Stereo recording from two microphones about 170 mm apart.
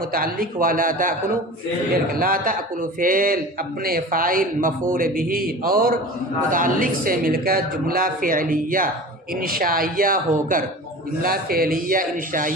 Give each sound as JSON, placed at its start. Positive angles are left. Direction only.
{"t": 0.1, "sound": "speech", "side_deg": -60}
{"t": 2.1, "sound": "speech", "side_deg": -55}